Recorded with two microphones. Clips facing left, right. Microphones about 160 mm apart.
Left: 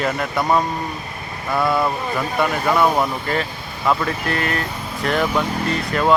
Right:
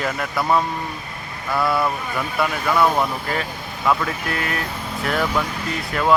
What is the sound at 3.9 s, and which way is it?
Speech, 5° right (ahead or behind).